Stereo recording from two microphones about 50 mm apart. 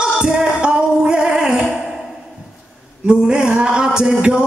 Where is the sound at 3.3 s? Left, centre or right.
Centre.